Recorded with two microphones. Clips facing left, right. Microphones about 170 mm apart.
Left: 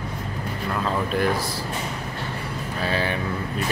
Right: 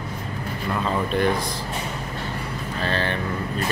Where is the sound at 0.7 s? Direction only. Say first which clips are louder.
Right 1 dB; centre (ahead or behind).